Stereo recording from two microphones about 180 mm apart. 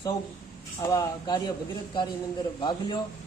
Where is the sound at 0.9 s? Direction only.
20° left (ahead or behind).